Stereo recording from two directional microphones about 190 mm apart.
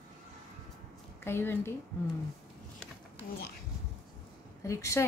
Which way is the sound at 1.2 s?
10° left (ahead or behind).